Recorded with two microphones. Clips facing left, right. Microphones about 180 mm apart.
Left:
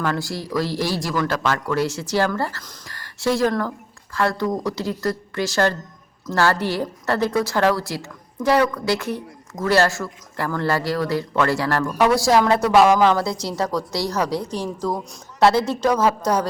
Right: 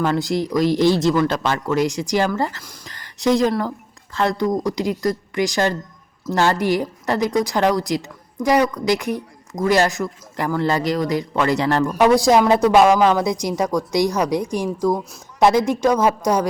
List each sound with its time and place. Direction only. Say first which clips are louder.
0.0 s a woman's voice: right 5 dB; 20° right (ahead or behind)